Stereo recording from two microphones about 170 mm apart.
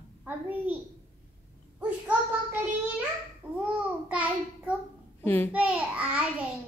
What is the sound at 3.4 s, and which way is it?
A child's voice, 10° right (ahead or behind).